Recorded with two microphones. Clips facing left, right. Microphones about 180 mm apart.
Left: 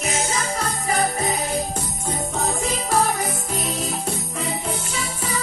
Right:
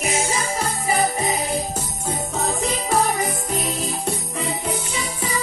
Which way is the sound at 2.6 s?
Centre (ahead or behind).